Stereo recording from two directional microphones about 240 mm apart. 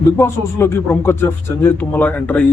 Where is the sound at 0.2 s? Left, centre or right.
Centre.